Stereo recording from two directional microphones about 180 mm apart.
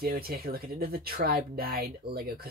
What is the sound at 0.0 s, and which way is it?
Speech, 55° right (ahead or behind).